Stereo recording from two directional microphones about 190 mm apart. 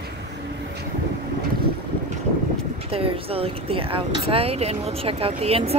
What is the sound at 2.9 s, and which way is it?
Speech, 30° right (ahead or behind).